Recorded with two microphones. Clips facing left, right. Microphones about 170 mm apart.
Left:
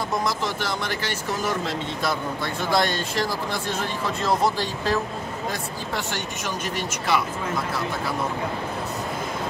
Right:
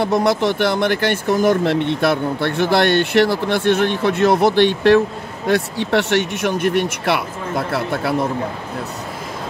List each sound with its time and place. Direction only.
0.0 s speech: 70° right (ahead or behind)